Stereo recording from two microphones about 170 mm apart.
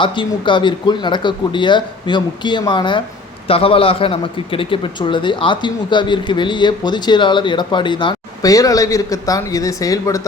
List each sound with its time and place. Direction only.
0.0 s a man's voice: 30° left (ahead or behind)